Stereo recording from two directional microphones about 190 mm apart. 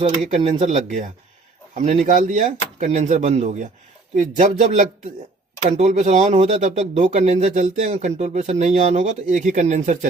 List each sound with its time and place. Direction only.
0.3 s speech: 35° right (ahead or behind)